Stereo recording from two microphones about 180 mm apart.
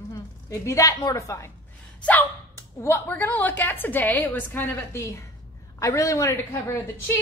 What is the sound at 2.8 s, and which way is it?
A woman's voice, 15° left (ahead or behind).